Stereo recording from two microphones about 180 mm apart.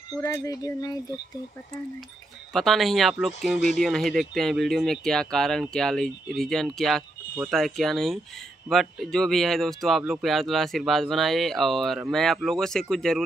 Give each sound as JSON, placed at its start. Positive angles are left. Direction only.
{"t": 0.1, "sound": "speech", "side_deg": 20}
{"t": 2.5, "sound": "speech", "side_deg": 0}
{"t": 3.3, "sound": "speech", "side_deg": 40}
{"t": 3.8, "sound": "speech", "side_deg": 5}